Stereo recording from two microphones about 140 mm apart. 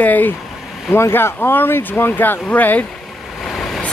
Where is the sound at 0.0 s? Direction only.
10° left (ahead or behind).